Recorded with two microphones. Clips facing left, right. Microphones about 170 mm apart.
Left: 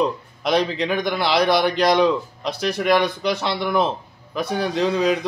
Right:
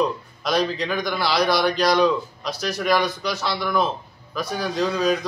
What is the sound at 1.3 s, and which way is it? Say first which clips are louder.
Speech: left 3 dB; 55° left (ahead or behind).